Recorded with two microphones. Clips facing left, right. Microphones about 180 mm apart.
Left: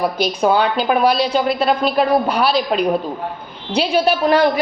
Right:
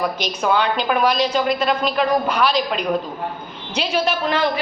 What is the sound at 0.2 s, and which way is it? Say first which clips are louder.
Speech: left 7 dB; 35° left (ahead or behind).